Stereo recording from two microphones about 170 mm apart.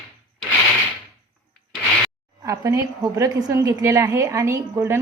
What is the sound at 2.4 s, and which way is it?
A woman's voice, 20° right (ahead or behind).